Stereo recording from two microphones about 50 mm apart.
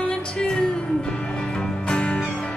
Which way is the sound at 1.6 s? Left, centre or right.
Left.